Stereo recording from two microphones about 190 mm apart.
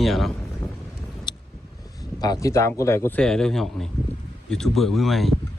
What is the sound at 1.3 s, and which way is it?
Vehicle, 20° left (ahead or behind).